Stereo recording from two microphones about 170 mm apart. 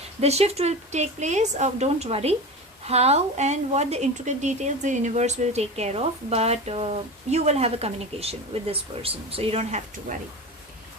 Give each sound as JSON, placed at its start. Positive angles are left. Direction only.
{"t": 0.2, "sound": "speech", "side_deg": -40}